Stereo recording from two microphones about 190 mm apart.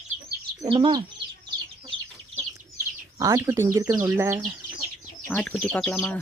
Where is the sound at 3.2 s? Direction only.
15° right (ahead or behind).